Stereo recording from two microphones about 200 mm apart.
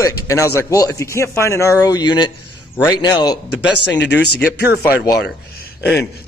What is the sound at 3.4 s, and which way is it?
Speech, 60° left (ahead or behind).